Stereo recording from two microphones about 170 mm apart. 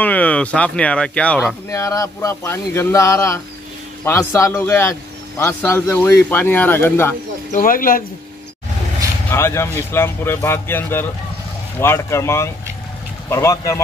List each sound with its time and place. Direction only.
0.0 s speech: 10° left (ahead or behind)
1.7 s speech: 20° left (ahead or behind)
7.5 s speech: 55° left (ahead or behind)
9.3 s speech: 15° left (ahead or behind)